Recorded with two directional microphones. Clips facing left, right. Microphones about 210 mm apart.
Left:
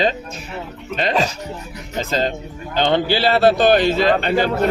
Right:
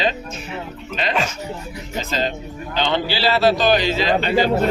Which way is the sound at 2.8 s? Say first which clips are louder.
Left 4 dB; 50° left (ahead or behind).